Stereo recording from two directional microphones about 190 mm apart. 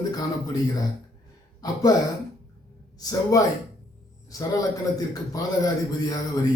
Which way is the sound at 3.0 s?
20° left (ahead or behind).